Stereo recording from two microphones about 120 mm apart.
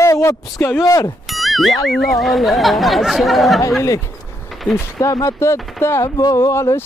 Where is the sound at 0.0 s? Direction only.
25° left (ahead or behind).